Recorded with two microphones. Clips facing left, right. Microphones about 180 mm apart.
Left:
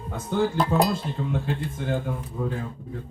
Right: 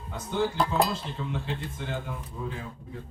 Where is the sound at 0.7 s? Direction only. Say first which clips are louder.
Left 4 dB; 50° left (ahead or behind).